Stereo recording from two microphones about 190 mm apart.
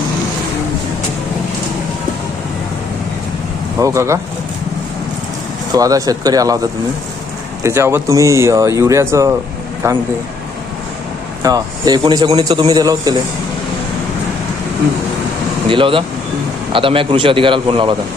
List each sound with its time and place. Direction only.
3.8 s speech: 15° right (ahead or behind)
5.7 s a man's voice: 20° right (ahead or behind)
11.4 s a man's voice: 20° right (ahead or behind)
15.7 s a man's voice: 25° right (ahead or behind)